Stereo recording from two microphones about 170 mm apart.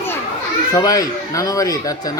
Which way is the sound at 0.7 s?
20° left (ahead or behind).